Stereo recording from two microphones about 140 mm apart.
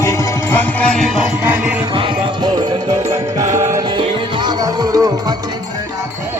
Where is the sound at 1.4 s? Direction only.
10° right (ahead or behind).